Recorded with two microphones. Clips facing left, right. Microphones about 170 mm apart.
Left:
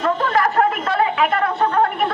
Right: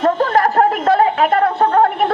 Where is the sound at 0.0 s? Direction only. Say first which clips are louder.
Right 4 dB; 40° right (ahead or behind).